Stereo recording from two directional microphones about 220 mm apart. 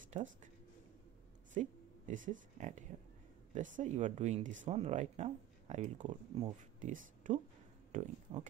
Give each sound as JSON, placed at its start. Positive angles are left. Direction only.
{"t": 0.1, "sound": "speech", "side_deg": -35}
{"t": 1.5, "sound": "speech", "side_deg": -35}
{"t": 6.0, "sound": "speech", "side_deg": -20}
{"t": 6.8, "sound": "speech", "side_deg": -35}